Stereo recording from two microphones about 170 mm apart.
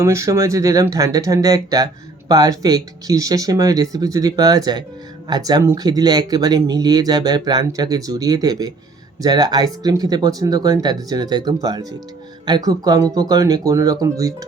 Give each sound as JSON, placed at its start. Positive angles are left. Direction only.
{"t": 0.0, "sound": "speech", "side_deg": -15}